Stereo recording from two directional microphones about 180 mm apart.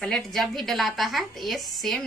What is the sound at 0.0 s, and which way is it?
A woman's voice, 5° left (ahead or behind).